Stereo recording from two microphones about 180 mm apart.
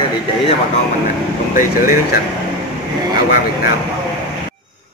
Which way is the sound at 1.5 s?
55° left (ahead or behind).